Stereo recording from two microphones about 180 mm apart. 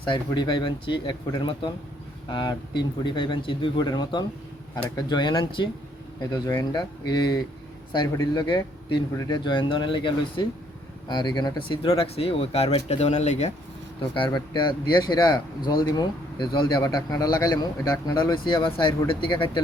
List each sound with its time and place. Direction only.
0.1 s speech: 25° left (ahead or behind)
14.1 s speech: 25° left (ahead or behind)